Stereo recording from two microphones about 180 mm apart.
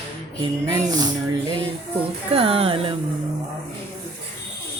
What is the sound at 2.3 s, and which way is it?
Music, 30° right (ahead or behind).